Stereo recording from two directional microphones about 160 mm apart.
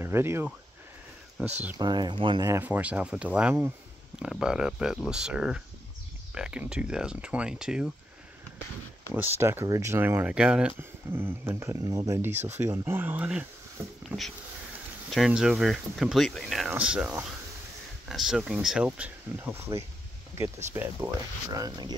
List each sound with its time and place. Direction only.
0.0 s speech: 15° right (ahead or behind)
1.8 s speech: 25° right (ahead or behind)
2.4 s speech: 15° right (ahead or behind)
9.1 s speech: 15° right (ahead or behind)